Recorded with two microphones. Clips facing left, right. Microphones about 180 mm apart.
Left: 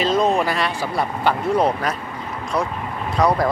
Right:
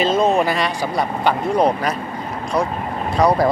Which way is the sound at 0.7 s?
15° right (ahead or behind).